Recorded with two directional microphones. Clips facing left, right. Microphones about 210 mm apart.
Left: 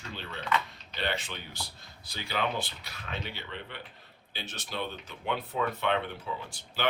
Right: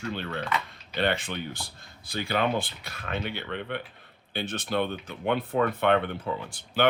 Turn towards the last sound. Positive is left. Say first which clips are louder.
# right 8 dB
turn(degrees=-55)  # may be behind; listen again after turning